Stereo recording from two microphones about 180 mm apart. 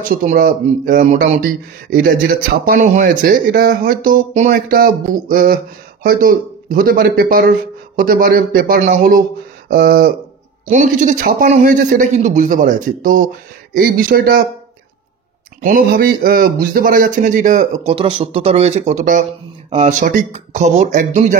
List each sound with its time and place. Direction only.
0.0 s speech: 45° right (ahead or behind)
1.4 s speech: 55° right (ahead or behind)
15.6 s speech: 55° right (ahead or behind)